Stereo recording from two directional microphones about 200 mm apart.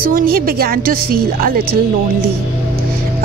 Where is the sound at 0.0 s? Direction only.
45° right (ahead or behind).